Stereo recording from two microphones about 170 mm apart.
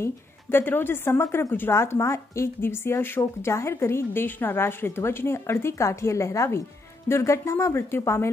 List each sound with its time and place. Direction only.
0.0 s a woman's voice: 15° left (ahead or behind)